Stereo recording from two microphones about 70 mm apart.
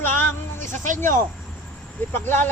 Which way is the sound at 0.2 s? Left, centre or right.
Left.